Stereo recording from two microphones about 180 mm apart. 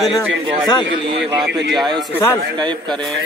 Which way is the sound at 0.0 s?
Centre (ahead or behind).